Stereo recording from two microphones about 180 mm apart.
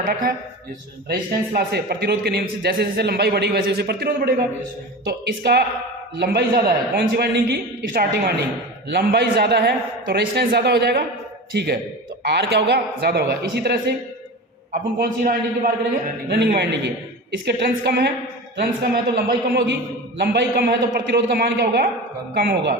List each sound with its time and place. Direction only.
1.0 s a man's voice: 65° right (ahead or behind)
15.2 s a man's voice: 50° right (ahead or behind)
16.5 s a man's voice: 65° right (ahead or behind)